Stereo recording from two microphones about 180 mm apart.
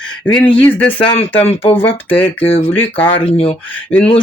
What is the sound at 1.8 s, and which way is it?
Speech, 10° left (ahead or behind).